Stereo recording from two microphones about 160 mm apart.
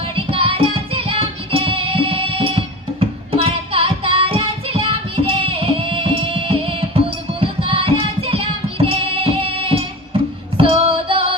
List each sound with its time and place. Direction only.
0.0 s music: 35° right (ahead or behind)
10.6 s female singing: 35° right (ahead or behind)